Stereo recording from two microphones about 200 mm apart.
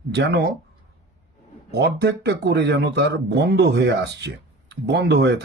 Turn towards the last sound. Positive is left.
turn(degrees=-60)  # may be behind; listen again after turning